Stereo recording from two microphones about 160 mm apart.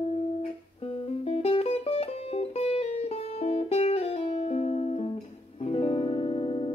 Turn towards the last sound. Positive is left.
turn(degrees=40)  # may be behind; listen again after turning